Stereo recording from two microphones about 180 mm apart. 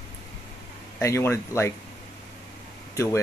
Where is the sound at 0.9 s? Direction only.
15° left (ahead or behind).